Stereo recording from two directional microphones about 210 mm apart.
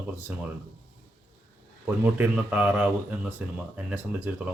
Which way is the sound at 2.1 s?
5° right (ahead or behind).